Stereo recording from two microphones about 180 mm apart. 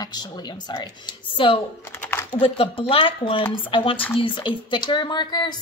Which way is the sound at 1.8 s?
10° left (ahead or behind).